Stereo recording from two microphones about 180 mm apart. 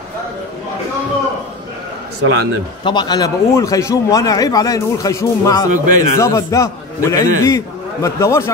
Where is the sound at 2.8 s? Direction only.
25° left (ahead or behind).